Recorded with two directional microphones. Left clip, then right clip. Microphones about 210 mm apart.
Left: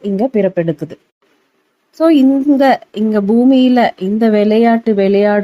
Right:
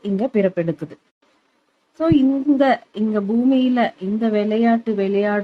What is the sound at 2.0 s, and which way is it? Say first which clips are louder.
A woman's voice: left 7 dB; 20° left (ahead or behind).